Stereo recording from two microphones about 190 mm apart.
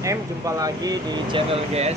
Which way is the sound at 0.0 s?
15° right (ahead or behind).